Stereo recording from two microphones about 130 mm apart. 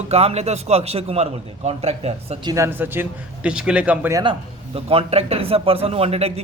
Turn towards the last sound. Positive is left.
turn(degrees=-50)  # may be behind; listen again after turning